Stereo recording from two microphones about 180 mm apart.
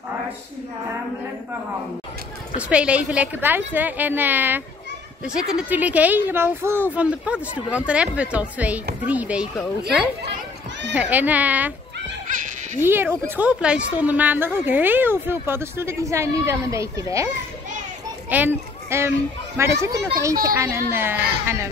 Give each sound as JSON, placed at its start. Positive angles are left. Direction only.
{"t": 2.5, "sound": "a woman's voice", "side_deg": -5}
{"t": 11.0, "sound": "a woman's voice", "side_deg": -10}
{"t": 12.8, "sound": "a woman's voice", "side_deg": -10}
{"t": 18.3, "sound": "a woman's voice", "side_deg": -10}